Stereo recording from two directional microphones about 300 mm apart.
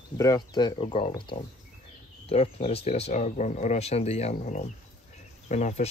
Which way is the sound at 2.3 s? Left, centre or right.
Centre.